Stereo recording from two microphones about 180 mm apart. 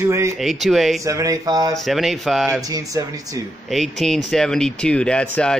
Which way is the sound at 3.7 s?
Centre (ahead or behind).